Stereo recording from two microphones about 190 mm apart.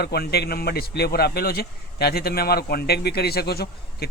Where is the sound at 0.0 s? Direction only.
60° left (ahead or behind).